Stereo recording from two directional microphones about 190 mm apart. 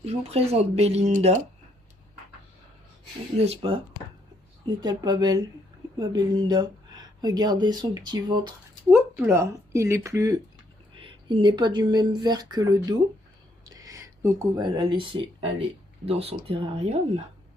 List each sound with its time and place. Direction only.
0.0 s speech: 35° right (ahead or behind)
3.4 s speech: 30° right (ahead or behind)
4.8 s speech: 20° right (ahead or behind)